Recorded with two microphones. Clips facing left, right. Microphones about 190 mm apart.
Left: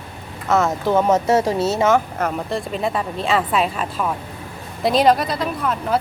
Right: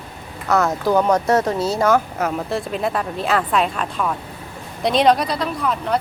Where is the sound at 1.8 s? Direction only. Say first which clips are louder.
Right 2 dB; centre (ahead or behind).